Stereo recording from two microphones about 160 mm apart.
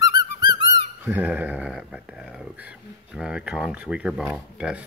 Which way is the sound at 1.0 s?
10° right (ahead or behind).